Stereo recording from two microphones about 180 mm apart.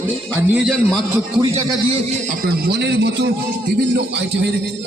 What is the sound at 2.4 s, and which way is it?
A man's voice, 65° right (ahead or behind).